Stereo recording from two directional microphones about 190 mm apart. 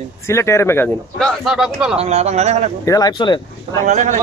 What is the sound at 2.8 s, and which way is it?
Speech, 20° left (ahead or behind).